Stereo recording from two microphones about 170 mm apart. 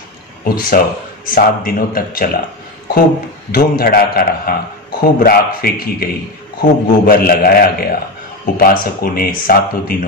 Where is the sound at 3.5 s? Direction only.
60° left (ahead or behind).